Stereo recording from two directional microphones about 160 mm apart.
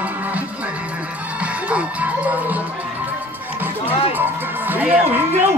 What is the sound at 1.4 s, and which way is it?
Music, 10° right (ahead or behind).